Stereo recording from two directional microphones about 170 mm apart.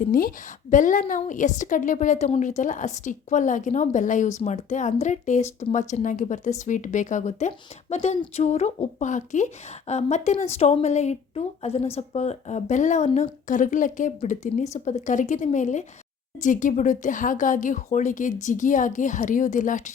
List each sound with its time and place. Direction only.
0.0 s a woman's voice: 55° left (ahead or behind)